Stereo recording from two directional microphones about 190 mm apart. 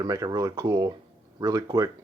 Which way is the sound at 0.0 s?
20° right (ahead or behind).